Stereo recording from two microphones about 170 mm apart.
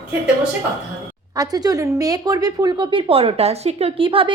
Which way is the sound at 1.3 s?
20° right (ahead or behind).